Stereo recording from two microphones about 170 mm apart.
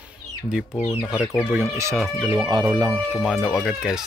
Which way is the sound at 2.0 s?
Centre (ahead or behind).